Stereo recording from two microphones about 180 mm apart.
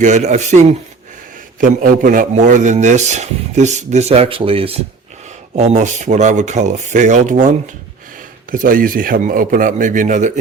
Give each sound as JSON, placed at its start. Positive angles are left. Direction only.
{"t": 0.0, "sound": "a man's voice", "side_deg": -40}
{"t": 1.6, "sound": "a man's voice", "side_deg": -50}